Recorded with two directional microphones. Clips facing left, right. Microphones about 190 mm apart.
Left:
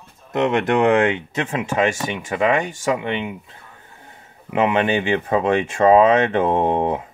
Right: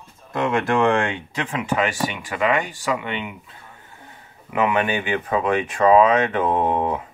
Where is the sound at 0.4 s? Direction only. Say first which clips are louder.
Left 2 dB; 20° left (ahead or behind).